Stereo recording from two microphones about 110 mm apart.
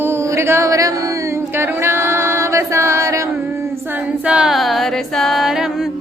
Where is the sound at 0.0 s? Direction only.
25° right (ahead or behind).